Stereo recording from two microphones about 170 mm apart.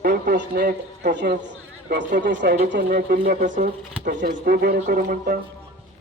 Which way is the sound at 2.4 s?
65° right (ahead or behind).